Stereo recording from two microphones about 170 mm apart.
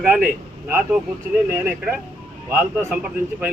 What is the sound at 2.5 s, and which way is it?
Speech, 10° right (ahead or behind).